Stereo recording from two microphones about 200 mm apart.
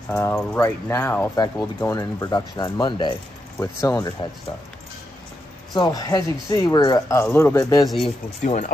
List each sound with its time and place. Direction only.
0.1 s speech: 10° left (ahead or behind)
5.8 s speech: 20° left (ahead or behind)
8.0 s speech: 30° left (ahead or behind)